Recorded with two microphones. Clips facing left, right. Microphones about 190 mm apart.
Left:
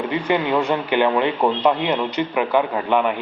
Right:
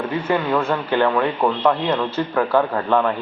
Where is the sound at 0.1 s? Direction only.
15° left (ahead or behind).